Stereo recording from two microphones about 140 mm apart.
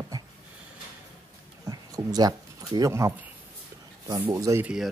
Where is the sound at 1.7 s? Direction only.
25° right (ahead or behind).